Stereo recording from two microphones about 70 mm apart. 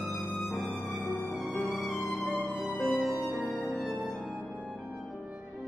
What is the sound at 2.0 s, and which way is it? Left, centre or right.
Music, centre.